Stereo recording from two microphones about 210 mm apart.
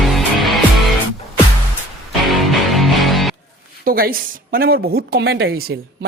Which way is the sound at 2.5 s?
Centre (ahead or behind).